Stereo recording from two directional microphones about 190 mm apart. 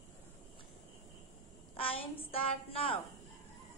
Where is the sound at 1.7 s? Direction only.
30° left (ahead or behind).